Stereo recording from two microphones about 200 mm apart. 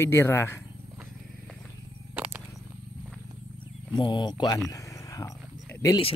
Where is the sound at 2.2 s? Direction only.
5° right (ahead or behind).